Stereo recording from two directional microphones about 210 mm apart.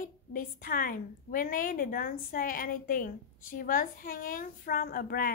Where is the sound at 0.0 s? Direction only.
40° left (ahead or behind).